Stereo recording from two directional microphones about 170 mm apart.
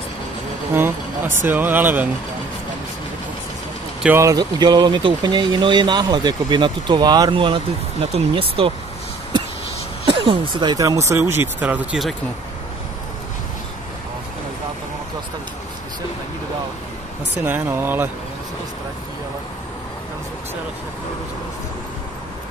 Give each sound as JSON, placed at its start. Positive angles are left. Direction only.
{"t": 0.7, "sound": "speech", "side_deg": -15}
{"t": 4.0, "sound": "speech", "side_deg": -15}
{"t": 10.0, "sound": "vehicle", "side_deg": -35}
{"t": 10.6, "sound": "speech", "side_deg": -25}
{"t": 17.5, "sound": "speech", "side_deg": -10}